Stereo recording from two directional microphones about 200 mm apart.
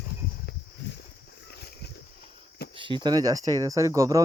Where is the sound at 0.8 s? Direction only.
60° left (ahead or behind).